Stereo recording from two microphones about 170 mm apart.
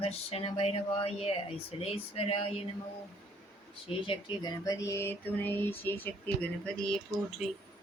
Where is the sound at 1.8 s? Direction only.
35° left (ahead or behind).